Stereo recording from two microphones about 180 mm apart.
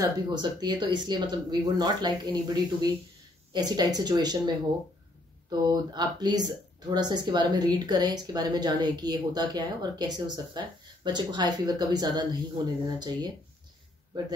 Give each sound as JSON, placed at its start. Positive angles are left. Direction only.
{"t": 0.0, "sound": "speech", "side_deg": -25}